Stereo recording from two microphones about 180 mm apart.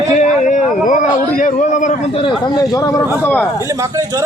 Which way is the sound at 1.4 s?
45° left (ahead or behind).